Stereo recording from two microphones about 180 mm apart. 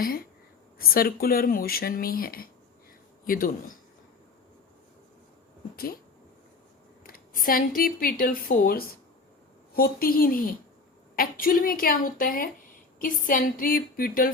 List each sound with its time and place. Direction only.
0.8 s speech: 55° left (ahead or behind)
5.7 s speech: 55° left (ahead or behind)
7.0 s speech: 50° left (ahead or behind)